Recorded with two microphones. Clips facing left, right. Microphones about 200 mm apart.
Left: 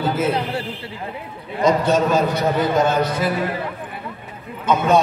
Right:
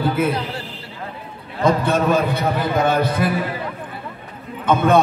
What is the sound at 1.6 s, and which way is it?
A man's voice, 55° right (ahead or behind).